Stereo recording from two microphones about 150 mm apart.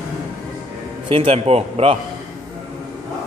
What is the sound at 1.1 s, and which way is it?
Speech, 40° right (ahead or behind).